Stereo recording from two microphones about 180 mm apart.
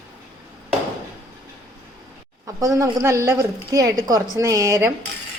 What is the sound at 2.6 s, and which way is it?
A woman's voice, 20° right (ahead or behind).